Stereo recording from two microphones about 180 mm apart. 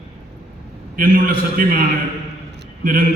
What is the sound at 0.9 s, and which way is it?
Speech, 55° right (ahead or behind).